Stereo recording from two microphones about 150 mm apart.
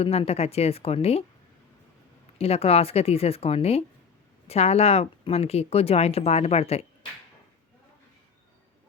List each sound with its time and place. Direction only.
0.0 s speech: 45° left (ahead or behind)
2.4 s speech: 40° left (ahead or behind)